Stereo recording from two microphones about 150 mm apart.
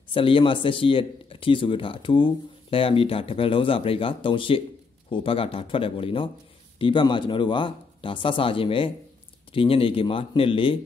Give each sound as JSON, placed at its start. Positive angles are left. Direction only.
{"t": 0.1, "sound": "speech", "side_deg": 35}